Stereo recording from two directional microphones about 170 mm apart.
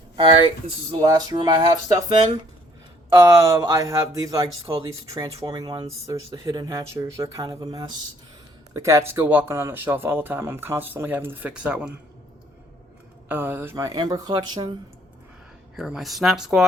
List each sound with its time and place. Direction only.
0.2 s speech: 30° right (ahead or behind); by 11.9 s 5° right (ahead or behind)
13.2 s speech: 10° right (ahead or behind); by 14.8 s 25° right (ahead or behind)
15.7 s speech: centre (ahead or behind)